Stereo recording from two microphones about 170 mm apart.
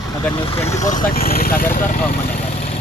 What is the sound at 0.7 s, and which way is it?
Speech, 45° left (ahead or behind).